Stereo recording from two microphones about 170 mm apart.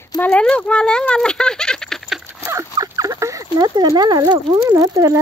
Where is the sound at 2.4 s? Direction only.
20° right (ahead or behind).